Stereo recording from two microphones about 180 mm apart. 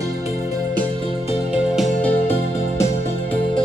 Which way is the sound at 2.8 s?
10° left (ahead or behind).